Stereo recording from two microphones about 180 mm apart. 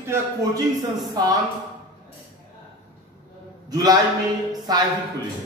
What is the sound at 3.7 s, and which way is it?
A man's voice, 20° right (ahead or behind).